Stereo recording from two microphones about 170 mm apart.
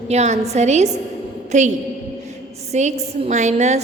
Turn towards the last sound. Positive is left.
turn(degrees=-40)  # may be behind; listen again after turning